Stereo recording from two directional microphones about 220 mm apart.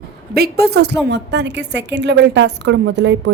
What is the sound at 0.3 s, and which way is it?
A woman's voice, 45° right (ahead or behind).